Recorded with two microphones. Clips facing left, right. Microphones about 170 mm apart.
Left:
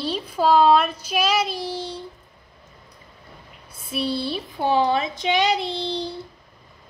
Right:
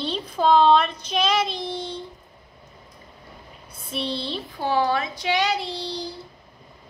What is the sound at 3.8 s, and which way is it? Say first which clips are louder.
A woman's voice: left 3 dB; 5° left (ahead or behind).